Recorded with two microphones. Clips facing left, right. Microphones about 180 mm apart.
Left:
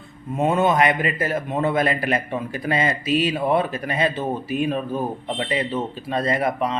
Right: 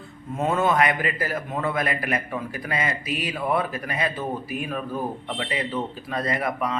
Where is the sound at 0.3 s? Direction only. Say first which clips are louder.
Left 3 dB; 20° left (ahead or behind).